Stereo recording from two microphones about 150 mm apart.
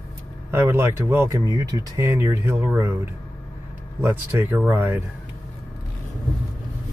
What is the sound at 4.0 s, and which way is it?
Speech, 15° right (ahead or behind).